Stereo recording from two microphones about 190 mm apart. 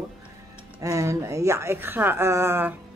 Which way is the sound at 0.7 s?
15° right (ahead or behind).